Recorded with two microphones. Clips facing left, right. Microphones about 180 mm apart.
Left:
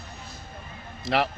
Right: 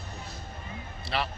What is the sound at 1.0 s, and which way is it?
Speech, 75° left (ahead or behind).